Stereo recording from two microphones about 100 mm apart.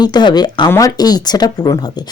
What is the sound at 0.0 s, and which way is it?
Speech, 45° left (ahead or behind).